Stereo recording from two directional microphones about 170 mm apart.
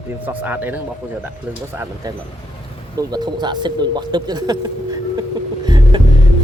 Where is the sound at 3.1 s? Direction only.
25° right (ahead or behind).